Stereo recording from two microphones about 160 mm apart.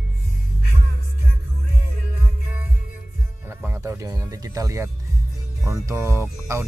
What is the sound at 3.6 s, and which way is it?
Speech, 15° right (ahead or behind).